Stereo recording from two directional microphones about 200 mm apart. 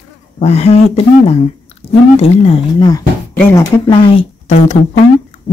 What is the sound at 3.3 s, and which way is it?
Speech, 10° left (ahead or behind).